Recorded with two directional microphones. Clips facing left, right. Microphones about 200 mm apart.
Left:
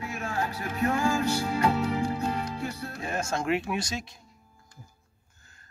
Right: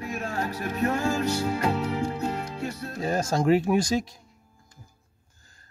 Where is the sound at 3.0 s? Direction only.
35° right (ahead or behind).